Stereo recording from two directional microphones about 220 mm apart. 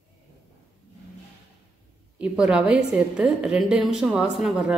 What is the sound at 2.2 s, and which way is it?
A woman's voice, 5° right (ahead or behind).